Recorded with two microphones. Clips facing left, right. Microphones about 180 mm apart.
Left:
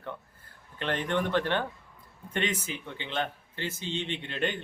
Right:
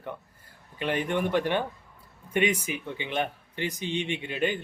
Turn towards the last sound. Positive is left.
turn(degrees=-10)  # may be behind; listen again after turning